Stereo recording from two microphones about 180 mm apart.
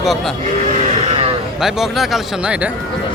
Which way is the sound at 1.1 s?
30° right (ahead or behind).